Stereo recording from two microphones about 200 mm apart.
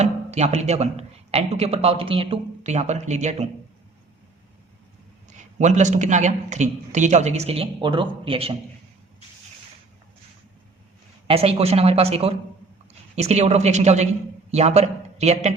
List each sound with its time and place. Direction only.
0.0 s speech: 35° right (ahead or behind)
5.3 s a man's voice: 35° right (ahead or behind)
11.3 s a man's voice: 30° right (ahead or behind)